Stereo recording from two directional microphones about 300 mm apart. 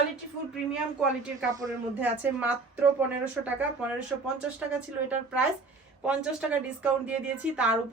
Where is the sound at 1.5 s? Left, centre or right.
Centre.